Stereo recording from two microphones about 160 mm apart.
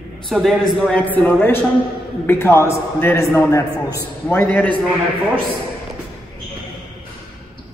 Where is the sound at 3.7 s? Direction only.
15° right (ahead or behind).